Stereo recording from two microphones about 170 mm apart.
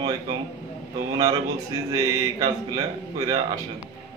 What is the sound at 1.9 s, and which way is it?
Speech, 20° right (ahead or behind).